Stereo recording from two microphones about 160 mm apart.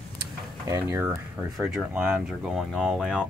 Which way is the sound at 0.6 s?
20° right (ahead or behind).